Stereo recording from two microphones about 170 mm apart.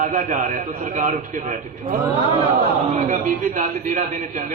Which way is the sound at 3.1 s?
50° right (ahead or behind).